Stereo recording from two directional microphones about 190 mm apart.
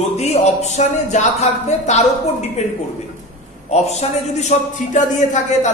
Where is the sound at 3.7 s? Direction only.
35° left (ahead or behind).